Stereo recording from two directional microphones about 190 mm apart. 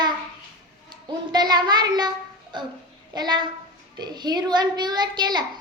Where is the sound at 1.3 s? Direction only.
20° right (ahead or behind).